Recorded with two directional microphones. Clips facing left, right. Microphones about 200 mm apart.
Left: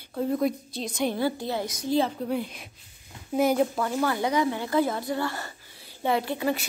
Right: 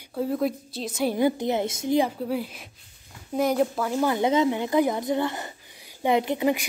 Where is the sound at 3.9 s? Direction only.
15° right (ahead or behind).